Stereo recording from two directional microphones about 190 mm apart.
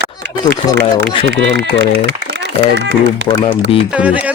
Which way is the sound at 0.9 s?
25° left (ahead or behind).